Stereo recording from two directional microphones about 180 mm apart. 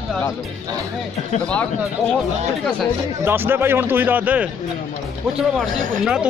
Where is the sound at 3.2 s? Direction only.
10° right (ahead or behind).